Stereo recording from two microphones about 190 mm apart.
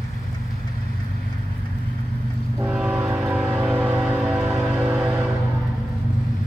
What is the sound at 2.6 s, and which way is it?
Train, 5° right (ahead or behind).